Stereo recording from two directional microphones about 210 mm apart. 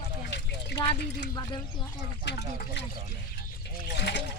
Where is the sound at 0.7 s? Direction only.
50° left (ahead or behind).